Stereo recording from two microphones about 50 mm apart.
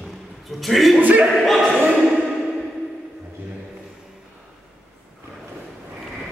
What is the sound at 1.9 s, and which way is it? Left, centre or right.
Music, centre.